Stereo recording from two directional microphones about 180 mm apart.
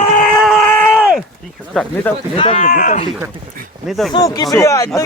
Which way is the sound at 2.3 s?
30° left (ahead or behind).